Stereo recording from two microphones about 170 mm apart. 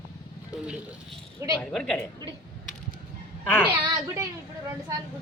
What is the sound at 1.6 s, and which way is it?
Speech, 5° left (ahead or behind).